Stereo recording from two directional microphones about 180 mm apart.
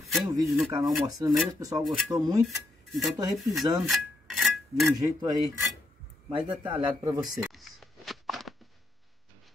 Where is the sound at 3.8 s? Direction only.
Centre (ahead or behind).